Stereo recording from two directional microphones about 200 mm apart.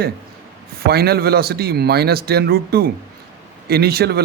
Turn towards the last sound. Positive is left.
turn(degrees=-50)  # may be behind; listen again after turning